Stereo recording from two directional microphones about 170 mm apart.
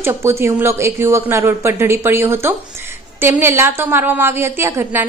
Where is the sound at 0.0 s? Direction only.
15° right (ahead or behind).